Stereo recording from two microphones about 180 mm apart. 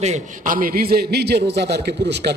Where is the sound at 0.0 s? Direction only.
40° right (ahead or behind).